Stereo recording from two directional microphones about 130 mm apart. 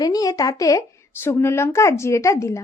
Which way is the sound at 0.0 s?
30° left (ahead or behind).